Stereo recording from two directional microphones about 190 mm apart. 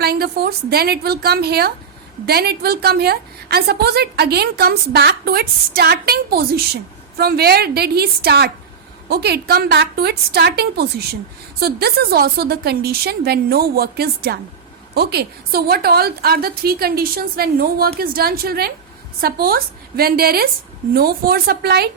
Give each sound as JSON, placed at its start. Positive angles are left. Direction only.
{"t": 0.0, "sound": "a woman's voice", "side_deg": -55}